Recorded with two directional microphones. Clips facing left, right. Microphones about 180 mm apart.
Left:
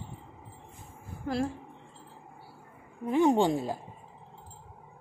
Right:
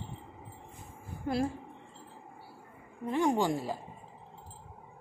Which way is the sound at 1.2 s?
5° right (ahead or behind).